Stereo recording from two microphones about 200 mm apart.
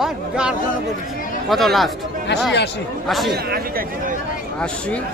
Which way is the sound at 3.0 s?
Centre (ahead or behind).